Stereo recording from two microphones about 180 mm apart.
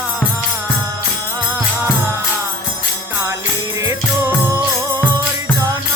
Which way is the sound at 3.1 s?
15° right (ahead or behind).